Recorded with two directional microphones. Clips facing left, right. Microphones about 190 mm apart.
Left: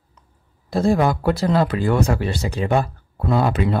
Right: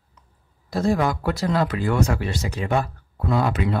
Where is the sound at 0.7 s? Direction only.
30° left (ahead or behind).